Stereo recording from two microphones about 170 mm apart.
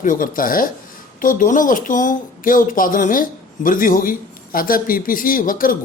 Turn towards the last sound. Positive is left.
turn(degrees=55)  # may be behind; listen again after turning